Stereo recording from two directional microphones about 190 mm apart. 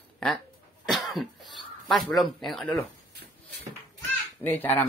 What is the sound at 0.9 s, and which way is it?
Speech, centre (ahead or behind).